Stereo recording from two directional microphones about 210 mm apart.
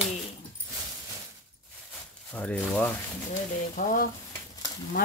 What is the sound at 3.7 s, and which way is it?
Stir, 45° left (ahead or behind).